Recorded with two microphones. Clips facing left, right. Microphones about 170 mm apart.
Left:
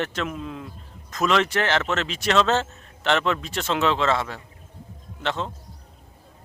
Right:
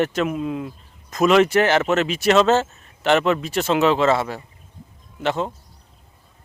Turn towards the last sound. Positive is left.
turn(degrees=-10)  # may be behind; listen again after turning